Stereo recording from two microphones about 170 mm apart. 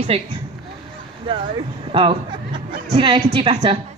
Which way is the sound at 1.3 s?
30° right (ahead or behind).